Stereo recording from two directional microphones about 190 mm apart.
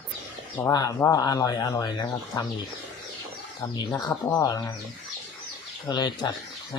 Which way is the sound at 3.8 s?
20° left (ahead or behind).